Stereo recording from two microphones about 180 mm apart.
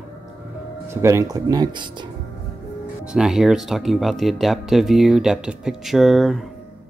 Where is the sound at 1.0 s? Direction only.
20° right (ahead or behind).